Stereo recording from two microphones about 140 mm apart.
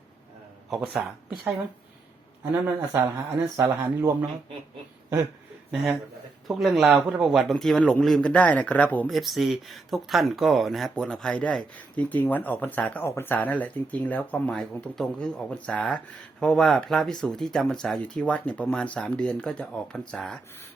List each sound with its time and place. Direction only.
0.7 s speech: 5° right (ahead or behind)
6.5 s speech: 5° right (ahead or behind)
9.0 s speech: centre (ahead or behind)